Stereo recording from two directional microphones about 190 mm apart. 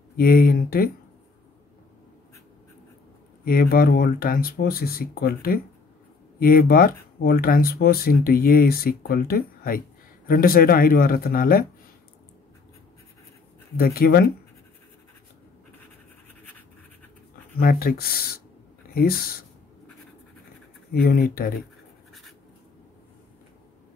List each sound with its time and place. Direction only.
0.2 s speech: 50° left (ahead or behind)
3.4 s speech: 50° left (ahead or behind)
13.7 s speech: 55° left (ahead or behind)
17.6 s speech: 50° left (ahead or behind)
20.9 s speech: 55° left (ahead or behind)